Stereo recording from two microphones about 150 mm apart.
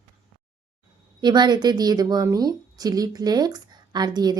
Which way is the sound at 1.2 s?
30° right (ahead or behind).